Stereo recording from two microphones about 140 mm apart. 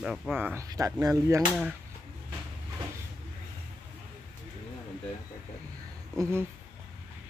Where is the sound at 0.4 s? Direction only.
15° right (ahead or behind).